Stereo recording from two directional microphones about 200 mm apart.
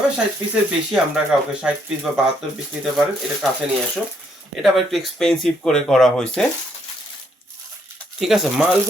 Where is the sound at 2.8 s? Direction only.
5° right (ahead or behind).